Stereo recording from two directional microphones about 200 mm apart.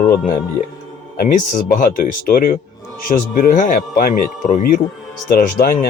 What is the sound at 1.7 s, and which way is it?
Speech, 45° left (ahead or behind).